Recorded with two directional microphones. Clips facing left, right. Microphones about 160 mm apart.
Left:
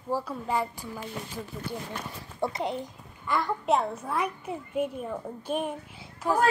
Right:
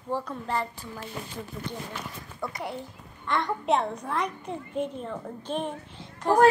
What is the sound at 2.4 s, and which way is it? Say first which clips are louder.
Speech: left 5 dB; 25° left (ahead or behind).